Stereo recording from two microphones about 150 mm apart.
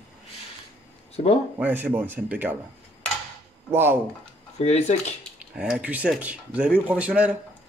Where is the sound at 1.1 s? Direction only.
40° left (ahead or behind).